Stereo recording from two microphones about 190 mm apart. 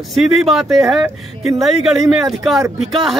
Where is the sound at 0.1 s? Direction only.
Centre (ahead or behind).